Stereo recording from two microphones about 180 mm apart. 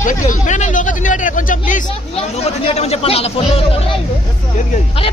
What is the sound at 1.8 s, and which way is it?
Speech, 30° left (ahead or behind).